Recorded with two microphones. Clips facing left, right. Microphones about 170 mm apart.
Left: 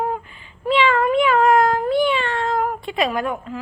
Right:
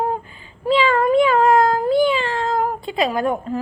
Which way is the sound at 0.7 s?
35° right (ahead or behind).